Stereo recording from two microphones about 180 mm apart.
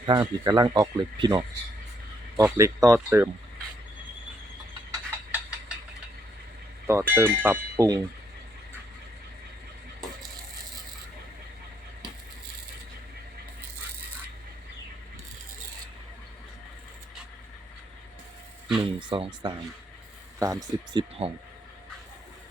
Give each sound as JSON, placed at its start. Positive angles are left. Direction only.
{"t": 0.0, "sound": "speech", "side_deg": -25}
{"t": 5.3, "sound": "ratchet", "side_deg": -5}
{"t": 6.8, "sound": "speech", "side_deg": -15}
{"t": 18.8, "sound": "speech", "side_deg": -25}
{"t": 21.2, "sound": "speech", "side_deg": -30}